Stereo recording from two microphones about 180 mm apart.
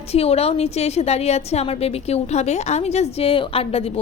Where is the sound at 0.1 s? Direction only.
35° left (ahead or behind).